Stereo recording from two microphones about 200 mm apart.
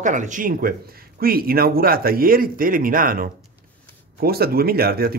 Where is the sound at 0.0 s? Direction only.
40° right (ahead or behind).